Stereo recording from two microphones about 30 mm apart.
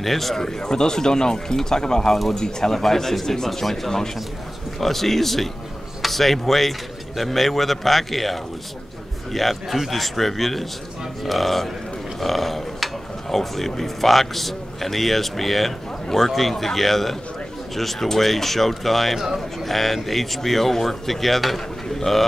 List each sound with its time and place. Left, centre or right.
0.0 s speech: centre
0.4 s speech: left; by 19.1 s centre
19.1 s speech: centre
19.6 s speech: centre
21.8 s speech: centre